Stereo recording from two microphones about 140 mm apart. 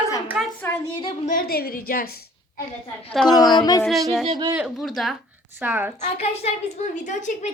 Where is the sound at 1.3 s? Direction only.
85° left.